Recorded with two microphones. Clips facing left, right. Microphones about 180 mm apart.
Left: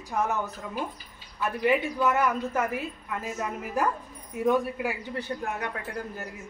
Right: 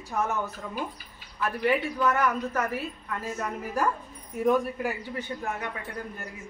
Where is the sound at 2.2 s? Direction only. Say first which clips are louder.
Left 1 dB; 25° left (ahead or behind).